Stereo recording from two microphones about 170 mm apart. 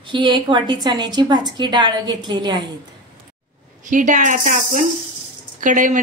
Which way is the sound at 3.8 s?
50° right (ahead or behind).